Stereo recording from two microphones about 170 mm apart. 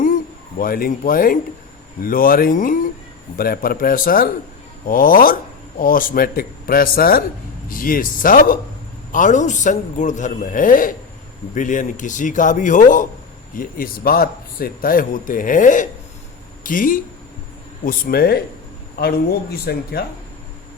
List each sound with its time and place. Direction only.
0.6 s speech: 55° left (ahead or behind)
17.8 s speech: 65° left (ahead or behind)